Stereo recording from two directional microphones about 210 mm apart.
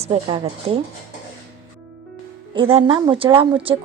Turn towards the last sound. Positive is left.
turn(degrees=-25)  # may be behind; listen again after turning